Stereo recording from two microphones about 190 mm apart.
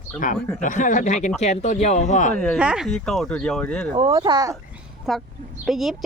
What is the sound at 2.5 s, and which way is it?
A woman's voice, 5° right (ahead or behind).